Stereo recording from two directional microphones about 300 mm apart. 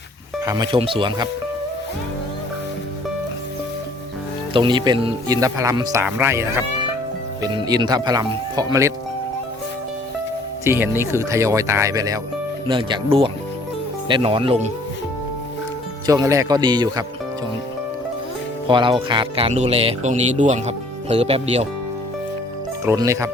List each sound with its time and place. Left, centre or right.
0.4 s speech: centre
4.5 s speech: centre
10.6 s speech: centre
16.0 s speech: centre
18.7 s speech: centre
22.9 s speech: centre